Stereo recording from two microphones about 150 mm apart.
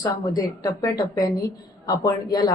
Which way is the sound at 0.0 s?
25° left (ahead or behind).